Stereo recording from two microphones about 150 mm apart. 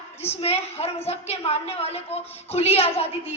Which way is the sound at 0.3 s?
45° left (ahead or behind).